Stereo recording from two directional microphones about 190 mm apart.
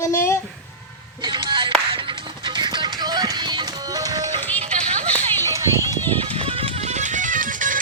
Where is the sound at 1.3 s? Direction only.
25° right (ahead or behind).